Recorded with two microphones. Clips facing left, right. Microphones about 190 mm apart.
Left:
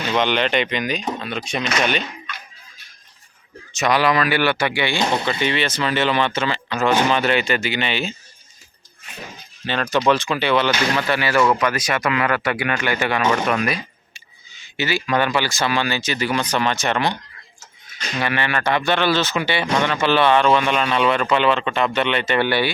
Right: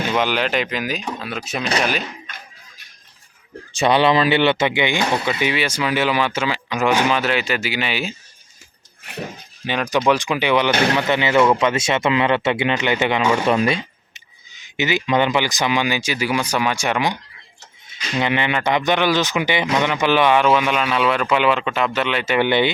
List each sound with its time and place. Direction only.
0.0 s speech: 10° right (ahead or behind)
3.7 s speech: 30° right (ahead or behind); by 8.1 s 5° right (ahead or behind)
9.6 s speech: 15° right (ahead or behind)
13.4 s speech: 25° right (ahead or behind)
18.2 s speech: 20° right (ahead or behind)
19.6 s speech: 5° right (ahead or behind)
22.4 s speech: 20° right (ahead or behind)